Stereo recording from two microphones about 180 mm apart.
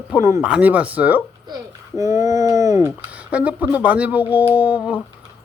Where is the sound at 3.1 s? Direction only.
5° right (ahead or behind).